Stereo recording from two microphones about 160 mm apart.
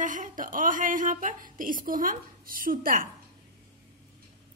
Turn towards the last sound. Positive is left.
turn(degrees=-60)  # may be behind; listen again after turning